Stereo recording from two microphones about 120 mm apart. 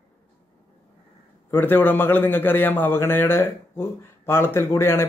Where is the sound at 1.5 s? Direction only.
15° left (ahead or behind).